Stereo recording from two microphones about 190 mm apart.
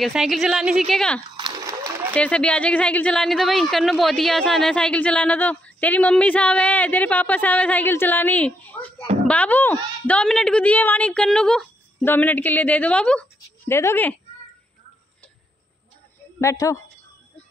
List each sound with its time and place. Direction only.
0.0 s speech: centre (ahead or behind)
1.3 s a sound: 20° right (ahead or behind)
2.1 s speech: 5° left (ahead or behind)
16.3 s a woman's voice: 15° left (ahead or behind)